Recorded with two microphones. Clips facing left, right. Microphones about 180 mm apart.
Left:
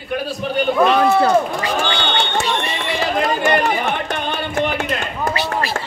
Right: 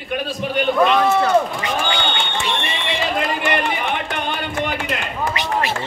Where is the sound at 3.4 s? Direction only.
40° left (ahead or behind).